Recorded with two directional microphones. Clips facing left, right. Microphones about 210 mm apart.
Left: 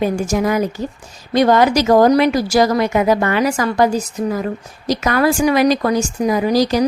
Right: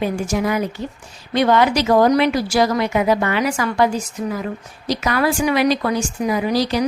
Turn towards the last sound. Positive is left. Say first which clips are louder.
# left 4 dB
turn(degrees=45)  # may be behind; listen again after turning